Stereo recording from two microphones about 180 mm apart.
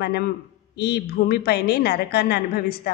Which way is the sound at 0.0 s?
60° left (ahead or behind).